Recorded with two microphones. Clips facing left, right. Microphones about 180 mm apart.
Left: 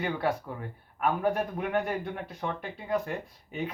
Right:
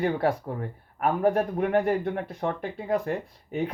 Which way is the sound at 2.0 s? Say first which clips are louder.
Right 6 dB; 50° right (ahead or behind).